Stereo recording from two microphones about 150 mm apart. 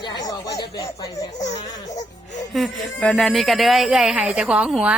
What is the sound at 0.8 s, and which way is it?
Speech, 20° left (ahead or behind).